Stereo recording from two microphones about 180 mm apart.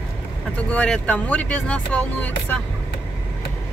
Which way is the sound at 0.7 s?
5° left (ahead or behind).